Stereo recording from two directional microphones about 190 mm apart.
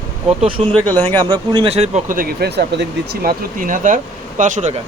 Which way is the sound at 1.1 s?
25° right (ahead or behind).